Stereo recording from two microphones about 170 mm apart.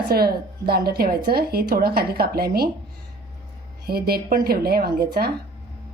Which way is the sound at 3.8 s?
65° right (ahead or behind).